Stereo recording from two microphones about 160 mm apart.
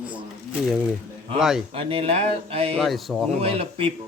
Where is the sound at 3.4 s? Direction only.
35° right (ahead or behind).